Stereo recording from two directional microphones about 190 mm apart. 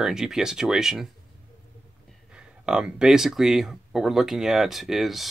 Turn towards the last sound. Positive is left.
turn(degrees=0)  # may be behind; listen again after turning